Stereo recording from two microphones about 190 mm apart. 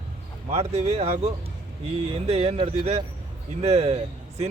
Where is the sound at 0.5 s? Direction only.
35° right (ahead or behind).